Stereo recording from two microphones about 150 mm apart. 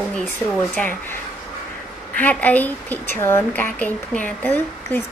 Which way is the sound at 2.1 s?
10° left (ahead or behind).